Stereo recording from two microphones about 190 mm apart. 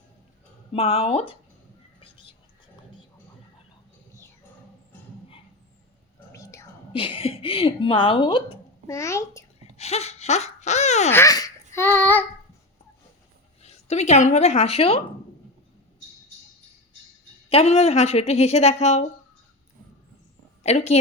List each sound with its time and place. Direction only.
0.7 s a woman's voice: 30° left (ahead or behind)
2.0 s whispering: 30° left (ahead or behind)
6.3 s whispering: 15° left (ahead or behind)
6.9 s a woman's voice: 30° left (ahead or behind)
9.6 s a sound: 35° left (ahead or behind)
11.1 s a child's voice: 15° left (ahead or behind)
13.6 s speech: 35° left (ahead or behind)
17.5 s a woman's voice: 30° left (ahead or behind)
20.7 s a woman's voice: 35° left (ahead or behind)